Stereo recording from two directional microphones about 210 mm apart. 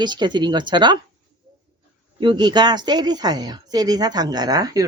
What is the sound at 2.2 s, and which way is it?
Speech, 20° right (ahead or behind).